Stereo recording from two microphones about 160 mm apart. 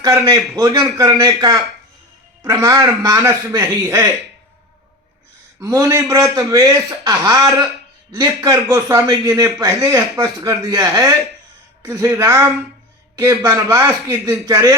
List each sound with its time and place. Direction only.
0.0 s a man's voice: 20° right (ahead or behind)
5.5 s a man's voice: 20° right (ahead or behind)